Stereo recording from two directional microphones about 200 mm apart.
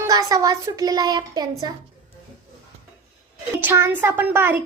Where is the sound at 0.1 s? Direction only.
15° right (ahead or behind).